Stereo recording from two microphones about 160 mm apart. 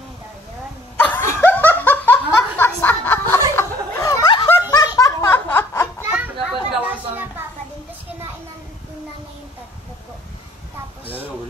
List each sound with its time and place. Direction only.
0.9 s a sound: 10° left (ahead or behind)
1.4 s laughter: 10° left (ahead or behind)
6.5 s chatter: 5° right (ahead or behind)